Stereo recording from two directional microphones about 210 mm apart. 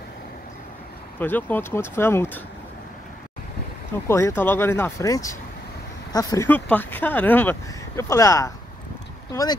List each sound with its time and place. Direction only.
1.2 s speech: 10° left (ahead or behind)
4.1 s speech: 10° left (ahead or behind)